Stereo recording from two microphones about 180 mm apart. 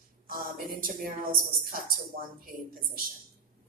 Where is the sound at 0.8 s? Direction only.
50° right (ahead or behind).